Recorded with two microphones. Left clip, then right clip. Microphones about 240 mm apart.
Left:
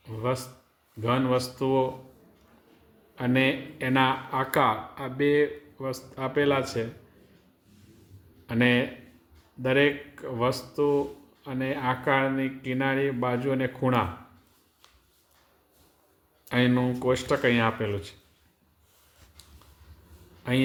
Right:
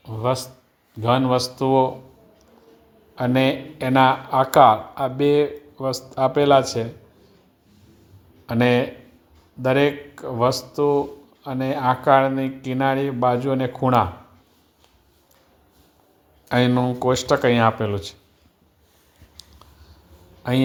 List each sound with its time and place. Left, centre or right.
0.0 s a sound: right
1.0 s speech: right
3.2 s speech: right
8.4 s speech: right
16.5 s speech: right